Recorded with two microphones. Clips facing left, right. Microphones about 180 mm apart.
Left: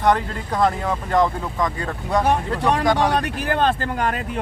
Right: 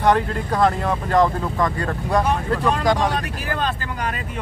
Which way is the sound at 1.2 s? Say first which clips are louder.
Right 2 dB; 15° left (ahead or behind).